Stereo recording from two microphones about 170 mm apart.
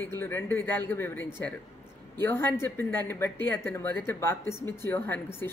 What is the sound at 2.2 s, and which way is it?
Speech, 15° left (ahead or behind).